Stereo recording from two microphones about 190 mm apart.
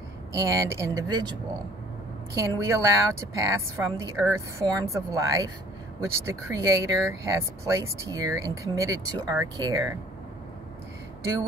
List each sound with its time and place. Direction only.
0.4 s a woman's voice: 15° right (ahead or behind)
2.3 s a woman's voice: 15° right (ahead or behind)